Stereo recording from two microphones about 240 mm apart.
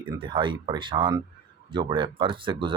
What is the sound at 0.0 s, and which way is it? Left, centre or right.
Speech, centre.